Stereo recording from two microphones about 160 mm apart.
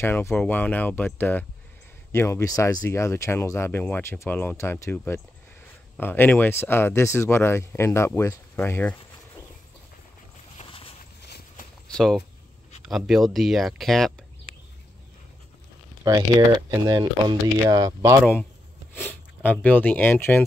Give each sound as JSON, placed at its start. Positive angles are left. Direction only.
{"t": 0.0, "sound": "speech", "side_deg": 15}
{"t": 10.6, "sound": "a sound", "side_deg": 35}
{"t": 11.2, "sound": "walk", "side_deg": 90}
{"t": 11.9, "sound": "speech", "side_deg": 5}
{"t": 16.0, "sound": "speech", "side_deg": -20}
{"t": 18.9, "sound": "speech", "side_deg": 10}